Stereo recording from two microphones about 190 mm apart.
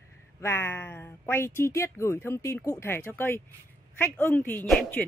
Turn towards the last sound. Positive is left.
turn(degrees=5)  # may be behind; listen again after turning